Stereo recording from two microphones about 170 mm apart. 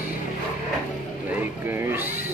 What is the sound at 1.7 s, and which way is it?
Speech, 10° right (ahead or behind).